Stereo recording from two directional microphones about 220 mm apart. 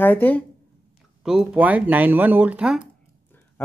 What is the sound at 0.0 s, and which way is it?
Speech, 10° left (ahead or behind).